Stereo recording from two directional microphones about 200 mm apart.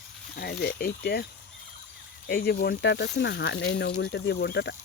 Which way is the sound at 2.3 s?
50° left (ahead or behind).